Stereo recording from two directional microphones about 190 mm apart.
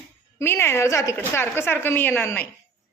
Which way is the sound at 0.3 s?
15° left (ahead or behind).